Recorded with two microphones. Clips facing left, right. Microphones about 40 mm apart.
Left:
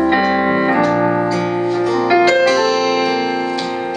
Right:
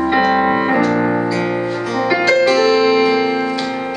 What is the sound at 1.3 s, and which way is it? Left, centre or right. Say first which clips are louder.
Music: left 1 dB; centre.